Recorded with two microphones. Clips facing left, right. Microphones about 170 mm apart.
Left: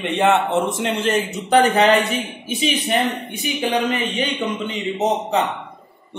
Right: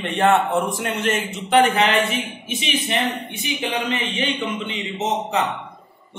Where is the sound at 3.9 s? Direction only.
40° left (ahead or behind).